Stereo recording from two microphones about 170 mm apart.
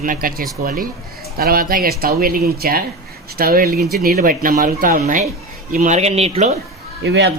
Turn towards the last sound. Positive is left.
turn(degrees=-90)